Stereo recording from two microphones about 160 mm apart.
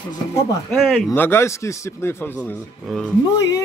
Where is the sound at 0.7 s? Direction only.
5° left (ahead or behind).